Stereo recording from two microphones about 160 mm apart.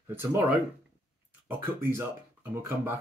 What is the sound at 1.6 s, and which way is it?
Speech, 15° right (ahead or behind).